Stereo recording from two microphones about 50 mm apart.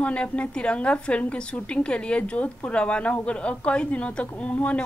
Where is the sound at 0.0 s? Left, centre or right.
Left.